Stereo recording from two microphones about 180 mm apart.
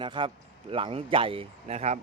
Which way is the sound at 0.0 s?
30° right (ahead or behind).